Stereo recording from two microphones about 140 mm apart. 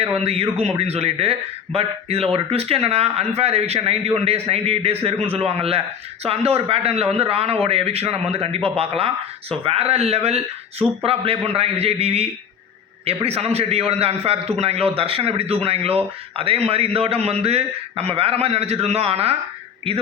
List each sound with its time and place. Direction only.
0.2 s a man's voice: 45° right (ahead or behind)